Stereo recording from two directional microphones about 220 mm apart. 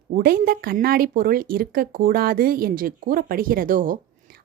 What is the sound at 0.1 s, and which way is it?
A woman's voice, 40° right (ahead or behind).